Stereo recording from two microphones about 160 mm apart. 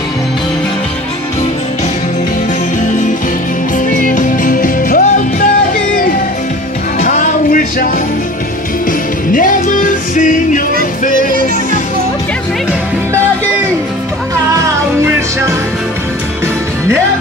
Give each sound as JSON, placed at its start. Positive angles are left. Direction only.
{"t": 3.9, "sound": "music", "side_deg": 55}
{"t": 7.0, "sound": "music", "side_deg": 55}
{"t": 9.3, "sound": "music", "side_deg": 55}